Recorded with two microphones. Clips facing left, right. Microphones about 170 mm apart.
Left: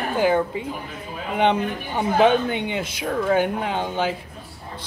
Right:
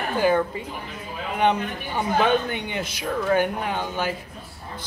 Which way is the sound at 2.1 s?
20° left (ahead or behind).